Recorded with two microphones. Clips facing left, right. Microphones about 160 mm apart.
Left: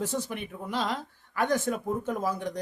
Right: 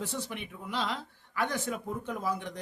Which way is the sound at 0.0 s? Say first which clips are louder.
Left 5 dB; 45° left (ahead or behind).